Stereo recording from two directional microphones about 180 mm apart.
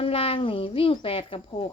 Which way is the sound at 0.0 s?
30° left (ahead or behind).